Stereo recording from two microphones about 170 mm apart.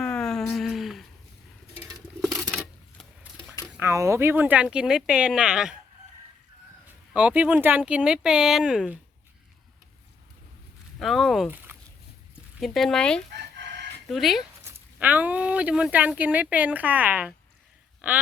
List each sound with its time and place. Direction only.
0.0 s a sound: 5° left (ahead or behind)
2.2 s coin: centre (ahead or behind)
3.7 s speech: 15° right (ahead or behind)
6.8 s speech: 5° right (ahead or behind)
11.0 s speech: centre (ahead or behind)
11.5 s a sound: 10° right (ahead or behind)
12.5 s speech: centre (ahead or behind)
13.6 s chicken: 90° right
14.1 s speech: centre (ahead or behind)
14.6 s speech: 10° right (ahead or behind)